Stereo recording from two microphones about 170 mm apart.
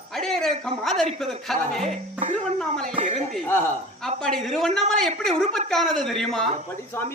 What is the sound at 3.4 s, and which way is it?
Speech, 15° left (ahead or behind).